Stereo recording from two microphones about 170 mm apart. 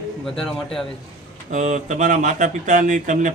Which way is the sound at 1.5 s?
45° right (ahead or behind).